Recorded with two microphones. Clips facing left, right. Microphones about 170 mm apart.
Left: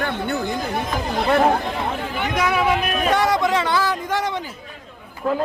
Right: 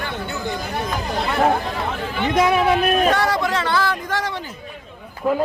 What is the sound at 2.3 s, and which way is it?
Speech, 25° right (ahead or behind).